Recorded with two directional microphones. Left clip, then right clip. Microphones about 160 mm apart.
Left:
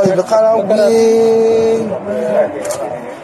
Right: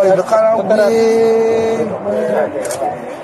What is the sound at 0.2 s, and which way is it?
Speech, 45° left (ahead or behind).